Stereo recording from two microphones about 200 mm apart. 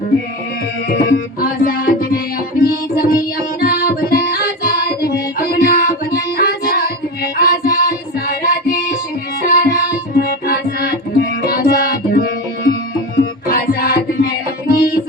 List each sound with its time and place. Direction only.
0.9 s music: 45° left (ahead or behind)